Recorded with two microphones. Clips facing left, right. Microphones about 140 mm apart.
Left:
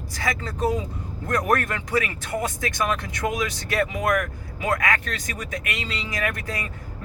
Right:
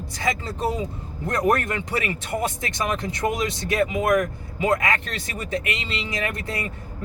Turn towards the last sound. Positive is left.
turn(degrees=-25)  # may be behind; listen again after turning